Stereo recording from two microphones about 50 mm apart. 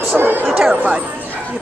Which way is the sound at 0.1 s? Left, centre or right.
Right.